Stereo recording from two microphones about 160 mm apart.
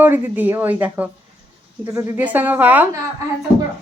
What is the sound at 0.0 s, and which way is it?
A woman's voice, 10° right (ahead or behind).